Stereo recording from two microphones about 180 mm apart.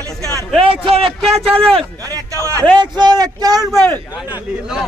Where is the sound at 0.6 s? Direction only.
30° right (ahead or behind).